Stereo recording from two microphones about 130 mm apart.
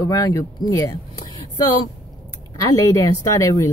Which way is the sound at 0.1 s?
25° left (ahead or behind).